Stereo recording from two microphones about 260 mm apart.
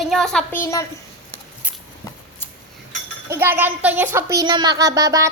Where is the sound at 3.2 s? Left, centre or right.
Centre.